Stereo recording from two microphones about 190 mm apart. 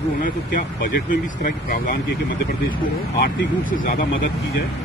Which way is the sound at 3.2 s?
45° left (ahead or behind).